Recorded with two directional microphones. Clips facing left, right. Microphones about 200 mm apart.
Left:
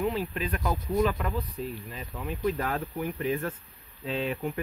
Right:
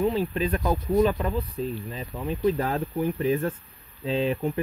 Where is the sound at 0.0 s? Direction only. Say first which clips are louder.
Right 5 dB; 30° right (ahead or behind).